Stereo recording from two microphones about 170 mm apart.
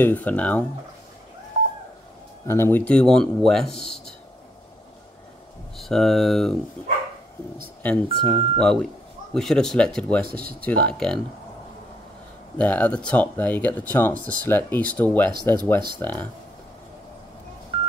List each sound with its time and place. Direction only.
0.0 s speech: 10° left (ahead or behind)
2.4 s speech: 15° left (ahead or behind)
5.8 s speech: centre (ahead or behind)
7.8 s speech: 10° left (ahead or behind)
12.5 s speech: 10° left (ahead or behind)